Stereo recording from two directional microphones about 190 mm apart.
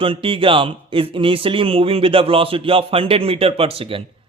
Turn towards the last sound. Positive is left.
turn(degrees=-30)  # may be behind; listen again after turning